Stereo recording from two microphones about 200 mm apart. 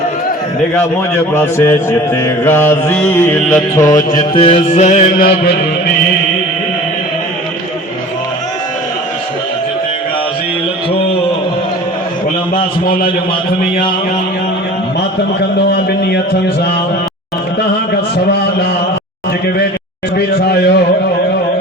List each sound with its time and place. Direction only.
1.3 s mantra: 15° left (ahead or behind); by 5.3 s 35° left (ahead or behind)
15.4 s a man's voice: 55° left (ahead or behind)
20.1 s a man's voice: 55° left (ahead or behind)